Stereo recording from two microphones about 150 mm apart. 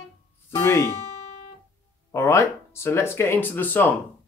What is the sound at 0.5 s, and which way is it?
Music, 20° left (ahead or behind).